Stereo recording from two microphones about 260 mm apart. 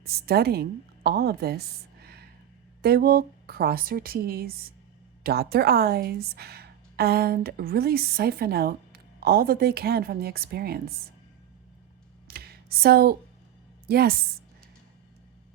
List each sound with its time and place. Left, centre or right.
0.0 s a woman's voice: right
12.3 s a sound: right
13.8 s a woman's voice: right